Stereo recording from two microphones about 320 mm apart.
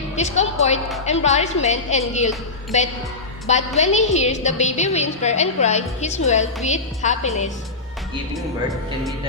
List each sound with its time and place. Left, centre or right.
0.2 s a woman's voice: left